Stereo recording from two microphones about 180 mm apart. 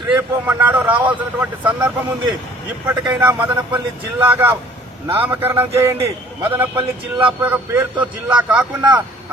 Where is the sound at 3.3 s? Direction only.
10° right (ahead or behind).